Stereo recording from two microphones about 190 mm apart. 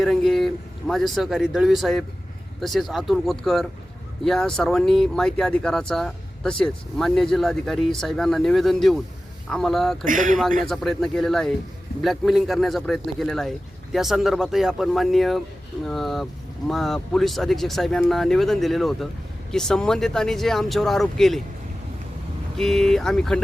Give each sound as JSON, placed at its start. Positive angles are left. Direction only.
{"t": 0.0, "sound": "speech", "side_deg": 0}
{"t": 10.1, "sound": "speech", "side_deg": -45}
{"t": 10.7, "sound": "speech", "side_deg": 0}
{"t": 22.5, "sound": "speech", "side_deg": 0}